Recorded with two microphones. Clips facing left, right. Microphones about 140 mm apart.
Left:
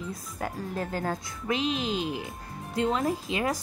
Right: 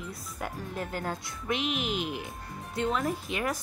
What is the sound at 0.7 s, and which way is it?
Speech, 40° left (ahead or behind).